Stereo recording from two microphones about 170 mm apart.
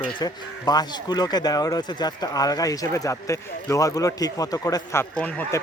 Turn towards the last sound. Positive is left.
turn(degrees=10)  # may be behind; listen again after turning